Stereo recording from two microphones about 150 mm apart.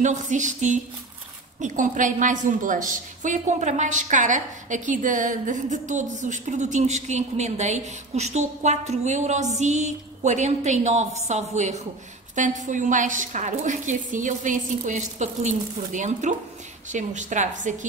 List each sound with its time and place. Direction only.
0.0 s a woman's voice: 55° right (ahead or behind)